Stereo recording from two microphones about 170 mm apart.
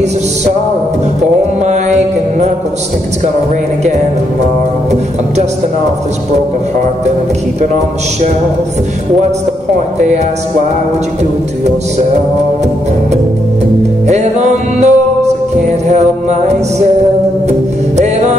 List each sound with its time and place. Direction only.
1.7 s mantra: 40° right (ahead or behind)
14.0 s music: 40° right (ahead or behind)
15.9 s mantra: 40° right (ahead or behind)
17.5 s music: 40° right (ahead or behind)